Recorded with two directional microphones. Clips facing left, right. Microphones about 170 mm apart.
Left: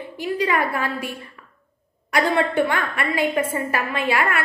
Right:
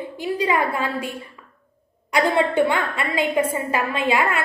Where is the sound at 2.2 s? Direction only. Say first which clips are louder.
Right 1 dB; 20° right (ahead or behind).